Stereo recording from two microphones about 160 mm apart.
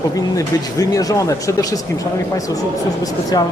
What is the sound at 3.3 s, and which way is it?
Speech, 25° left (ahead or behind).